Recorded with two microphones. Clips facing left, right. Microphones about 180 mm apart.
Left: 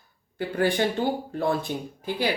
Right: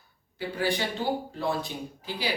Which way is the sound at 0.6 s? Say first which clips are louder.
Left 6 dB; 55° left (ahead or behind).